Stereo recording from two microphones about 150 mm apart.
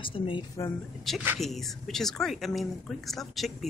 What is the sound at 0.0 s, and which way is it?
Speech, 35° left (ahead or behind).